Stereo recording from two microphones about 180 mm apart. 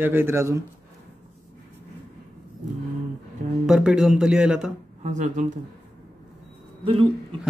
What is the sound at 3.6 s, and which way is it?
Speech, 5° right (ahead or behind).